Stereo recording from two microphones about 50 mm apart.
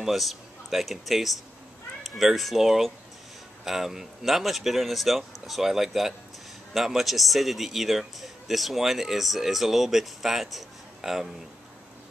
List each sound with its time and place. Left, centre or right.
0.0 s a man's voice: centre